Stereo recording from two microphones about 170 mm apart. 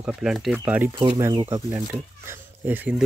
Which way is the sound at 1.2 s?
20° right (ahead or behind).